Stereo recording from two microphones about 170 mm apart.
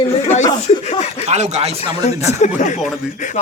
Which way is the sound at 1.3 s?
40° right (ahead or behind).